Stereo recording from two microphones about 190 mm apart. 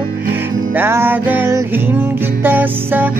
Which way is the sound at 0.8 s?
10° right (ahead or behind).